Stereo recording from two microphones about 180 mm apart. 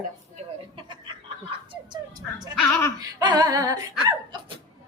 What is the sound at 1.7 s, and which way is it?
Dog, 25° right (ahead or behind).